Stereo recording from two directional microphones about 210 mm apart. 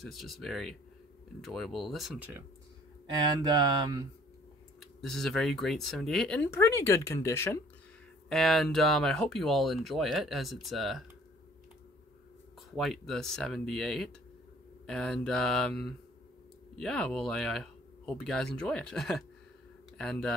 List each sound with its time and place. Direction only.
0.0 s speech: centre (ahead or behind)
3.4 s mantra: 15° right (ahead or behind)
5.0 s speech: centre (ahead or behind)
8.3 s speech: centre (ahead or behind)
12.7 s speech: centre (ahead or behind)